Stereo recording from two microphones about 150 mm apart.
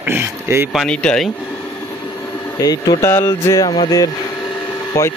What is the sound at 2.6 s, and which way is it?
Speech, 25° left (ahead or behind).